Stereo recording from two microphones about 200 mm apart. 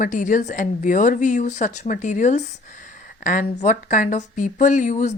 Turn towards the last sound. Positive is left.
turn(degrees=40)  # may be behind; listen again after turning